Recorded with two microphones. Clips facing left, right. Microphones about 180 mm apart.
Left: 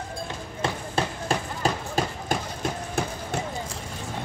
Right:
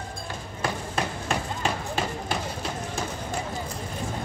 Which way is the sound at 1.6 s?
40° left (ahead or behind).